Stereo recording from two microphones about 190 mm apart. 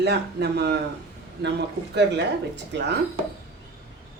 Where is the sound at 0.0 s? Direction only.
60° right (ahead or behind).